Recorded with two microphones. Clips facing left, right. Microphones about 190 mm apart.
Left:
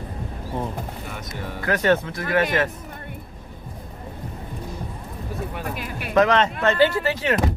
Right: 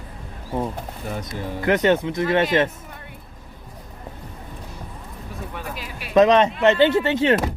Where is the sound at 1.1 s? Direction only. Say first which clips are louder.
Right 4 dB; 35° right (ahead or behind).